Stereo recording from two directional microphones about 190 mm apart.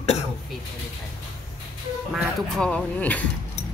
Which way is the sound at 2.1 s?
5° left (ahead or behind).